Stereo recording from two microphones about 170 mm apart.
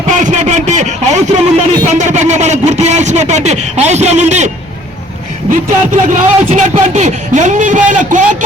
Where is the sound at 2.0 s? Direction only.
45° right (ahead or behind).